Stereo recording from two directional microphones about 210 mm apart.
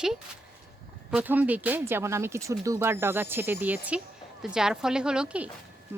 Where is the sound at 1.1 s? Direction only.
10° right (ahead or behind).